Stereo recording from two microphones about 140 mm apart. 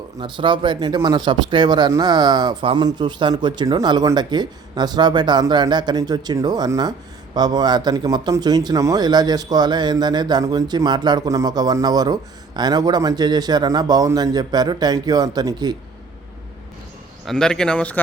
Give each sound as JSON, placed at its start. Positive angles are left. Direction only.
{"t": 0.2, "sound": "speech", "side_deg": -35}
{"t": 17.2, "sound": "speech", "side_deg": 5}